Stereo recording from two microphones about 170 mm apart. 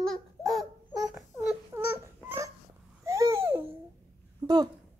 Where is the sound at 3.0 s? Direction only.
15° right (ahead or behind).